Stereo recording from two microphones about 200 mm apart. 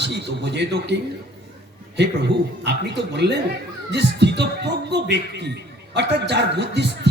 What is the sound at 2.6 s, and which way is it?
A man's voice, 60° right (ahead or behind).